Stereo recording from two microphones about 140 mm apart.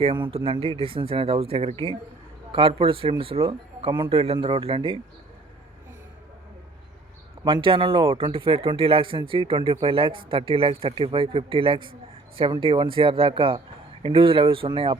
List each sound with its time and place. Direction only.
0.3 s speech: 40° right (ahead or behind)
7.4 s speech: 35° right (ahead or behind)